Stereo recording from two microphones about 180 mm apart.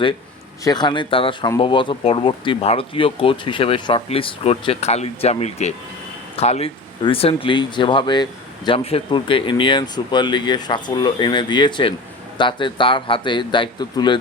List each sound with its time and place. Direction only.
0.6 s speech: 25° left (ahead or behind)